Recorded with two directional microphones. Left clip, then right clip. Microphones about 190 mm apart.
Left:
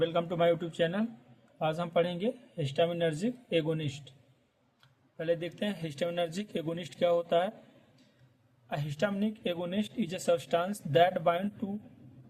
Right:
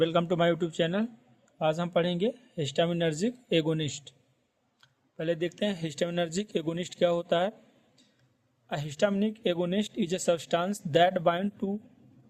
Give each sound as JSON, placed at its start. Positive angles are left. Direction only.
{"t": 0.0, "sound": "speech", "side_deg": -50}
{"t": 8.7, "sound": "speech", "side_deg": -45}